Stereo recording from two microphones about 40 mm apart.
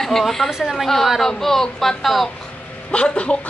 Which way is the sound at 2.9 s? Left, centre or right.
Left.